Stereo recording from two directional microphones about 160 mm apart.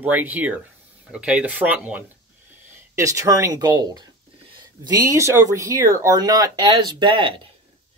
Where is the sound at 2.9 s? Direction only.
20° right (ahead or behind).